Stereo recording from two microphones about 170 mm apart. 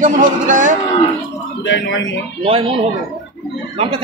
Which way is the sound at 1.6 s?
90° left.